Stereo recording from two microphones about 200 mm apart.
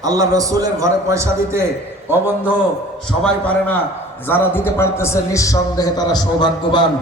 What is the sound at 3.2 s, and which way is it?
A man's voice, 5° left (ahead or behind).